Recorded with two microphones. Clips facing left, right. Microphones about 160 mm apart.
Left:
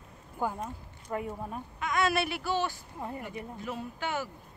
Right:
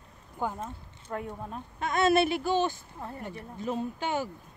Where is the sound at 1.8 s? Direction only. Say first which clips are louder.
Right 5 dB; 30° right (ahead or behind).